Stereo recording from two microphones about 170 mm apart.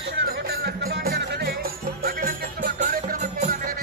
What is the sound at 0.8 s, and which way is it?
Music, 65° right (ahead or behind).